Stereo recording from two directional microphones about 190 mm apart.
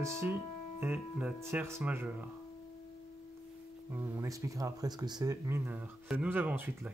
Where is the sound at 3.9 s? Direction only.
15° right (ahead or behind).